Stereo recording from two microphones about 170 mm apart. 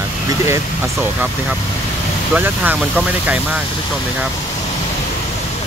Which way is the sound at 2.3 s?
10° right (ahead or behind).